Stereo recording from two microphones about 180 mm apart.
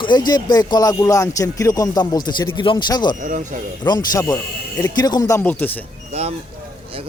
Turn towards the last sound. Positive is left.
turn(degrees=-35)  # may be behind; listen again after turning